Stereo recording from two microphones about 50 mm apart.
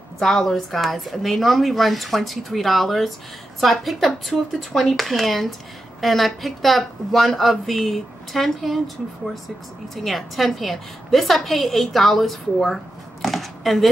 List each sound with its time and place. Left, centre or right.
0.2 s a woman's voice: centre